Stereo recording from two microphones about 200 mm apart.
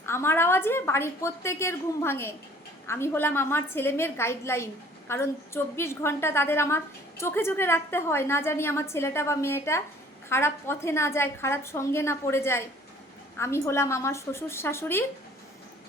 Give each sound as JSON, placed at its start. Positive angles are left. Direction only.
{"t": 0.0, "sound": "a woman's voice", "side_deg": 10}